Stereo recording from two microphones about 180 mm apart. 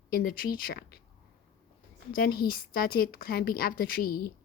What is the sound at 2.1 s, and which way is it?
A woman's voice, 55° left (ahead or behind).